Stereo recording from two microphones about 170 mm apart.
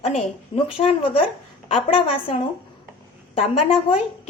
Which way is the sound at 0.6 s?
30° left (ahead or behind).